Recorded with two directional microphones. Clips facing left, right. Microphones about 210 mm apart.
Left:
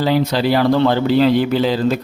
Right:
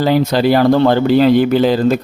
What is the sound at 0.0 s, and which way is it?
A man's voice, 50° right (ahead or behind).